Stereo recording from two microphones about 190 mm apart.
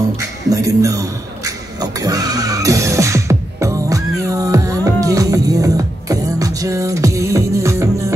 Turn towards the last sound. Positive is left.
turn(degrees=-15)  # may be behind; listen again after turning